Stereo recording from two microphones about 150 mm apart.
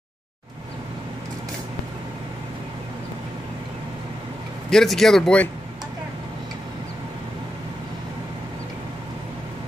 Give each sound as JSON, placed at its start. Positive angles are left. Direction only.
{"t": 4.6, "sound": "speech", "side_deg": 5}